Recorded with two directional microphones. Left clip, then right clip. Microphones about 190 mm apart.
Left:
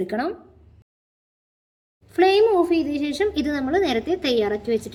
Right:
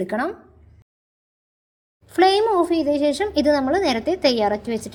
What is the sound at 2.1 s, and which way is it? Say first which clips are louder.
Speech: even; 30° right (ahead or behind).